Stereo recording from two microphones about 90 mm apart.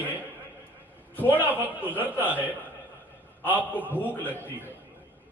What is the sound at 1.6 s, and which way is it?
Speech, 20° right (ahead or behind).